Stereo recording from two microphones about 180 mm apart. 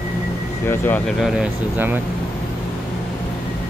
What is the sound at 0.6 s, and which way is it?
Speech, 10° left (ahead or behind).